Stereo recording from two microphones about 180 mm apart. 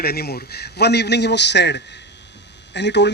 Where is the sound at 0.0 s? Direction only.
60° left (ahead or behind).